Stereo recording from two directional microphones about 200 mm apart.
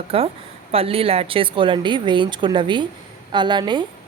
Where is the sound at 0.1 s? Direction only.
30° right (ahead or behind).